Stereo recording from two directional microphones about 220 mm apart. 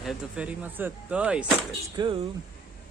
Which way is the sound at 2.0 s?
20° right (ahead or behind).